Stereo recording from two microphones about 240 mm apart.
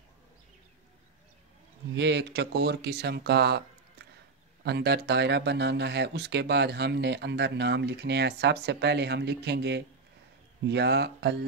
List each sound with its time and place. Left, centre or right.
2.0 s speech: right
4.6 s speech: right